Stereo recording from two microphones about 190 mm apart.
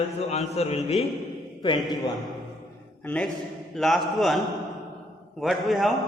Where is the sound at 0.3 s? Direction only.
35° left (ahead or behind).